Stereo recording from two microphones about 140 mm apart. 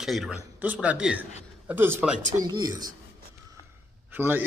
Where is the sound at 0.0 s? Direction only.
Centre (ahead or behind).